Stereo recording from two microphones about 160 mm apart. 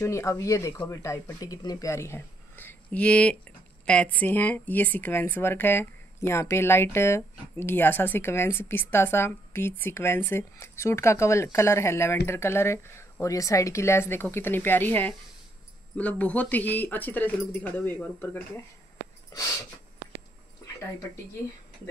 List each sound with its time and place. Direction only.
0.0 s speech: 20° left (ahead or behind)